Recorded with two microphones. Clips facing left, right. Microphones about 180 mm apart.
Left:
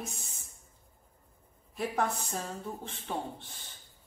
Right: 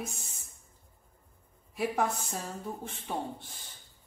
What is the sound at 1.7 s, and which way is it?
Speech, 10° right (ahead or behind).